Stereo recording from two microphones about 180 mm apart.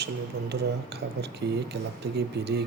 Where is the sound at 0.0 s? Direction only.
65° right (ahead or behind).